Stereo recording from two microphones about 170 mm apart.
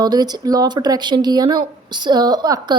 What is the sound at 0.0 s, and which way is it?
A woman's voice, 25° right (ahead or behind).